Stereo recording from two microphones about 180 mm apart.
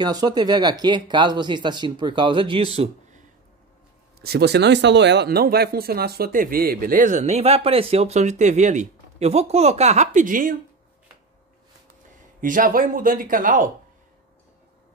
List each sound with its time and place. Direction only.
0.0 s speech: 20° right (ahead or behind); by 3.3 s 40° right (ahead or behind)
4.2 s speech: 65° right (ahead or behind); by 10.5 s 50° right (ahead or behind)
12.4 s speech: 50° right (ahead or behind)